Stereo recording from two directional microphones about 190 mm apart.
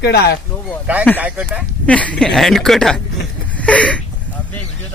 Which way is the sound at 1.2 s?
5° right (ahead or behind).